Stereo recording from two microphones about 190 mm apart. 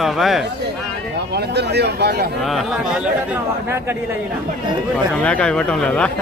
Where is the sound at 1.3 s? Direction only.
60° right (ahead or behind).